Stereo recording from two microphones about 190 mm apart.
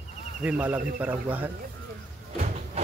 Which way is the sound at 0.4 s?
10° right (ahead or behind).